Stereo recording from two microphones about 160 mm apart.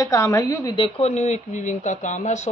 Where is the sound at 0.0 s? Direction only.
20° left (ahead or behind).